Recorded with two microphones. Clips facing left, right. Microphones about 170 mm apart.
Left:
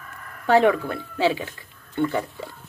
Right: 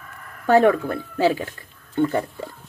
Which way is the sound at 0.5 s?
45° right (ahead or behind).